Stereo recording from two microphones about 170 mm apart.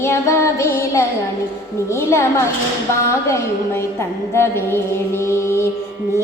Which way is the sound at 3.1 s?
15° left (ahead or behind).